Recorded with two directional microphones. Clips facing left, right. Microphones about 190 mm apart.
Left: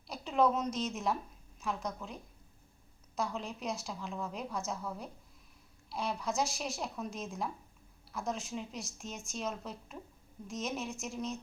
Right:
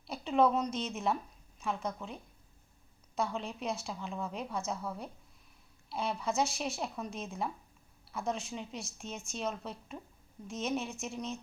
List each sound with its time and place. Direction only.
0.1 s a woman's voice: centre (ahead or behind)